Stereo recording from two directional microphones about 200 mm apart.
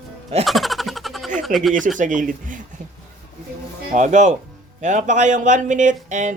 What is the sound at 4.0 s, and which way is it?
Speech, 35° right (ahead or behind).